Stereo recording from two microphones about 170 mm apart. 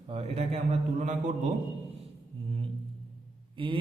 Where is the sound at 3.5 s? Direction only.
30° right (ahead or behind).